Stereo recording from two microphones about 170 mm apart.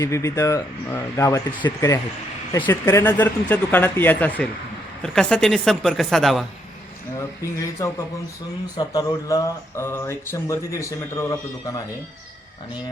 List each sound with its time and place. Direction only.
0.0 s a woman's voice: 20° left (ahead or behind); by 6.4 s centre (ahead or behind)
7.4 s speech: 15° left (ahead or behind)